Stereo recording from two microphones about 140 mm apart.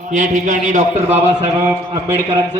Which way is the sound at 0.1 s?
65° right (ahead or behind).